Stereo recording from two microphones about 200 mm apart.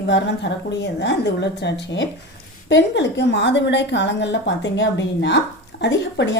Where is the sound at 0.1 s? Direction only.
60° left (ahead or behind).